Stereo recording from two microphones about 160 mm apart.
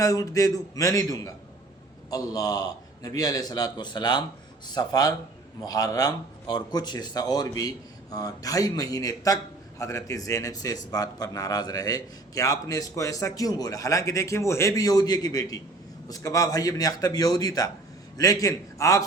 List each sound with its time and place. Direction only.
0.0 s a man's voice: 20° left (ahead or behind)